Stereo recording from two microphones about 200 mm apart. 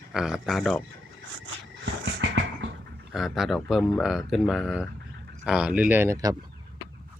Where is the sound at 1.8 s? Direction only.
65° right (ahead or behind).